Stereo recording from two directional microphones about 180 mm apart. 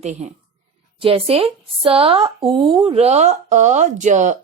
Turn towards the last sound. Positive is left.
turn(degrees=-40)  # may be behind; listen again after turning